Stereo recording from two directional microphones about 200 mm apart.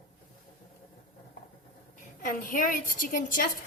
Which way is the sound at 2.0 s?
40° left (ahead or behind).